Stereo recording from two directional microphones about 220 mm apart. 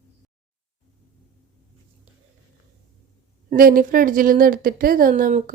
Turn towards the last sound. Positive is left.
turn(degrees=-35)  # may be behind; listen again after turning